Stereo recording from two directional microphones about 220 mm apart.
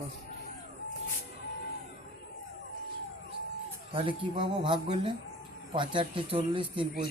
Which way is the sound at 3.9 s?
25° right (ahead or behind).